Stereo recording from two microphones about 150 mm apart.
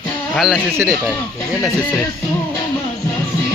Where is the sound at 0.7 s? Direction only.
20° right (ahead or behind).